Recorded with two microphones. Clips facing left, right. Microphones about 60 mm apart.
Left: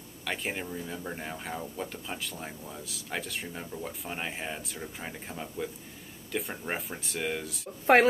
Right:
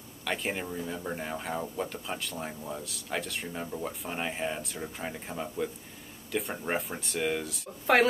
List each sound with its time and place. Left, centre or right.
0.2 s speech: centre
7.8 s speech: left